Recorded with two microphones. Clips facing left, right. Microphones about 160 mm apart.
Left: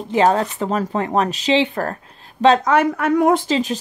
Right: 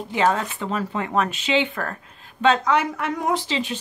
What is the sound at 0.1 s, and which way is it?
Speech, 35° left (ahead or behind).